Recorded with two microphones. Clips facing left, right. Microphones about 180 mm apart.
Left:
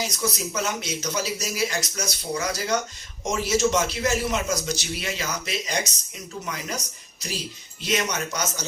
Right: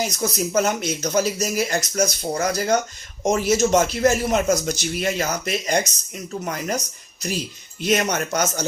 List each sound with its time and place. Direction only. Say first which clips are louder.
0.0 s speech: right 4 dB; 50° right (ahead or behind)